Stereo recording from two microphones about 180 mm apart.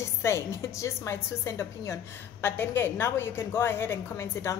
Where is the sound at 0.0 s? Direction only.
15° left (ahead or behind).